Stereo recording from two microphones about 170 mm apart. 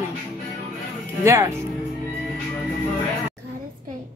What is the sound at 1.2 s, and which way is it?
Speech, 15° right (ahead or behind).